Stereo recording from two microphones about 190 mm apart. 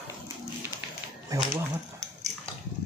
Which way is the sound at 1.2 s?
20° right (ahead or behind).